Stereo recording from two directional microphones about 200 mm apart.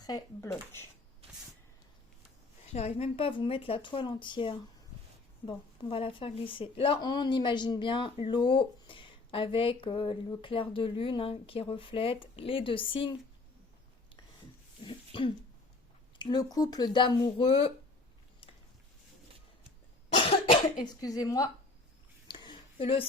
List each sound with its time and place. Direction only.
0.0 s speech: 15° left (ahead or behind)
2.7 s a woman's voice: 30° left (ahead or behind)
14.8 s throat clearing: 25° left (ahead or behind)
16.1 s a woman's voice: 20° left (ahead or behind)
20.1 s cough: 30° left (ahead or behind)
22.3 s a sound: 25° left (ahead or behind)